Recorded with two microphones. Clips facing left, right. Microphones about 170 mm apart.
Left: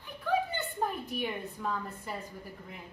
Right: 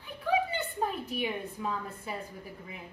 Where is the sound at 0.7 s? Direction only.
5° right (ahead or behind).